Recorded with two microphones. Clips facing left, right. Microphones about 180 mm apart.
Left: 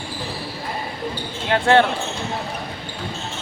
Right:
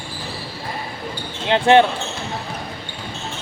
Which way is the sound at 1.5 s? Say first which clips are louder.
Right 3 dB; 20° right (ahead or behind).